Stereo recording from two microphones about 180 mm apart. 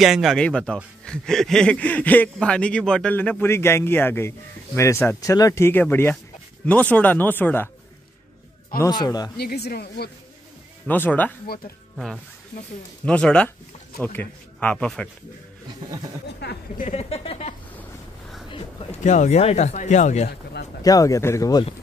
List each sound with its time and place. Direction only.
0.0 s a man's voice: centre (ahead or behind)
8.8 s a man's voice: 20° left (ahead or behind)
9.4 s speech: 60° left (ahead or behind)
10.9 s speech: 10° left (ahead or behind)
11.4 s speech: 55° left (ahead or behind)
13.0 s speech: 5° left (ahead or behind)
16.3 s speech: 65° left (ahead or behind)
16.8 s speech: 35° left (ahead or behind)
20.8 s speech: 20° left (ahead or behind)